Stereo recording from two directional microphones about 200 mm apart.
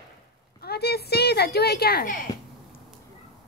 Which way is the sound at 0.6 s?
55° left (ahead or behind).